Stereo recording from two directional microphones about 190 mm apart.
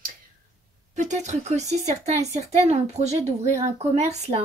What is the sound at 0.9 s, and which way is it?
Speech, 40° right (ahead or behind).